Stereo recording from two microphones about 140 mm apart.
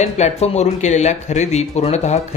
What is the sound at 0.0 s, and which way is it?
Speech, 50° left (ahead or behind).